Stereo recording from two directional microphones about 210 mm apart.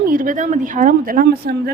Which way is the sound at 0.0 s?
40° right (ahead or behind).